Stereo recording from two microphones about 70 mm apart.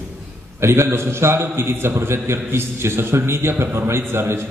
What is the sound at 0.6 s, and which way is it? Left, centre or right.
A man's voice, right.